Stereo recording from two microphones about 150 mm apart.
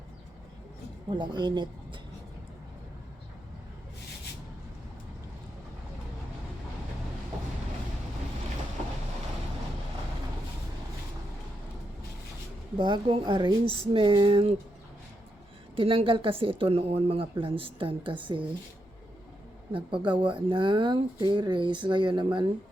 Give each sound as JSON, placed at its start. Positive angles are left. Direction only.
{"t": 1.1, "sound": "speech", "side_deg": -30}
{"t": 12.7, "sound": "speech", "side_deg": -30}
{"t": 15.7, "sound": "speech", "side_deg": -35}
{"t": 19.7, "sound": "speech", "side_deg": -35}